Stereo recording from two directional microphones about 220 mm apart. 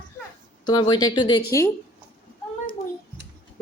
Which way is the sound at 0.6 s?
20° left (ahead or behind).